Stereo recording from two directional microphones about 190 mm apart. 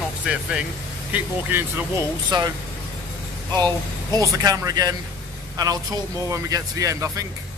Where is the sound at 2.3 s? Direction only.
20° right (ahead or behind).